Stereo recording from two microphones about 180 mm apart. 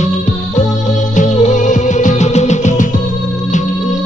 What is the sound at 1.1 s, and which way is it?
Music, 40° left (ahead or behind).